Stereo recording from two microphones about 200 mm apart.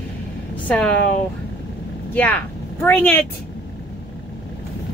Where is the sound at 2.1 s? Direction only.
10° left (ahead or behind).